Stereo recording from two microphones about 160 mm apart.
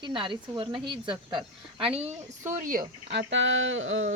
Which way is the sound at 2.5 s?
60° right (ahead or behind).